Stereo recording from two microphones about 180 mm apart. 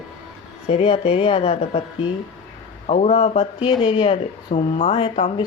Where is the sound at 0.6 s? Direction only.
35° left (ahead or behind).